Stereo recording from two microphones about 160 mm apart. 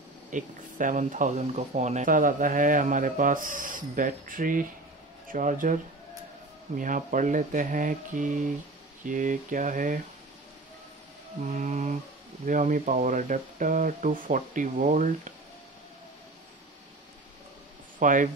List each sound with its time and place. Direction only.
0.3 s speech: 55° right (ahead or behind)
6.8 s speech: 55° right (ahead or behind)
11.5 s speech: 40° right (ahead or behind)
12.4 s speech: 55° right (ahead or behind)
17.9 s speech: 55° right (ahead or behind)